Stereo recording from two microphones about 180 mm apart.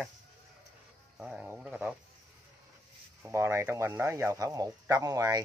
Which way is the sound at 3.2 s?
15° right (ahead or behind).